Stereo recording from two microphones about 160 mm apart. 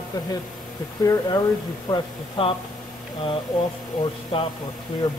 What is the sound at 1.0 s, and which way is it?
Speech, 20° left (ahead or behind).